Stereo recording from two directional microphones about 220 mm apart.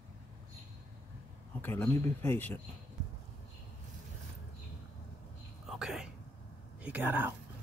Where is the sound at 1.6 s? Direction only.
10° left (ahead or behind).